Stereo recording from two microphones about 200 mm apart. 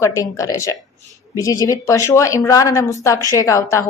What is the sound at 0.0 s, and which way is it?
Speech, 15° left (ahead or behind).